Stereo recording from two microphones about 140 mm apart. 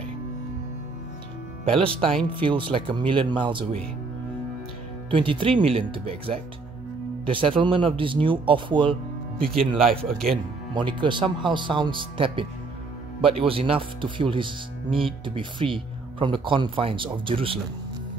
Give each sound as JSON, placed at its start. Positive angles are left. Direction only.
{"t": 1.8, "sound": "speech", "side_deg": -40}
{"t": 5.1, "sound": "speech", "side_deg": -40}
{"t": 9.8, "sound": "speech", "side_deg": 0}
{"t": 10.7, "sound": "speech", "side_deg": -35}